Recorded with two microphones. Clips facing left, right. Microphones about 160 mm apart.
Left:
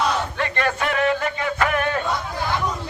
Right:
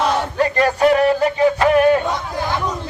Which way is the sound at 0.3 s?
40° right (ahead or behind).